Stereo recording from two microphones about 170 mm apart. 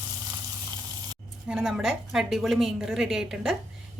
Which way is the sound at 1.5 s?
Centre (ahead or behind).